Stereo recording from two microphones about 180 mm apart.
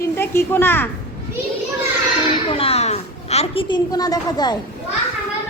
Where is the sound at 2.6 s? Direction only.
35° left (ahead or behind).